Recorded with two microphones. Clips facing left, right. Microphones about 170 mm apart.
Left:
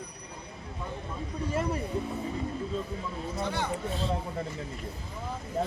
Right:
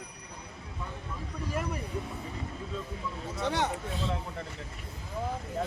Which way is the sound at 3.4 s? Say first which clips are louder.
Right 3 dB; 75° right (ahead or behind).